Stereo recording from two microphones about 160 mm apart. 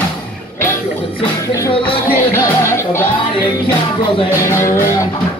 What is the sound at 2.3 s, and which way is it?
Music, 15° left (ahead or behind).